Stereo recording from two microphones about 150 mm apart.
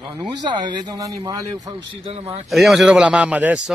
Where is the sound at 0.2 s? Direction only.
30° right (ahead or behind).